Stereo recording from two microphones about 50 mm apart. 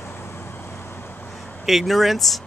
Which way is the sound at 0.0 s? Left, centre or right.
Left.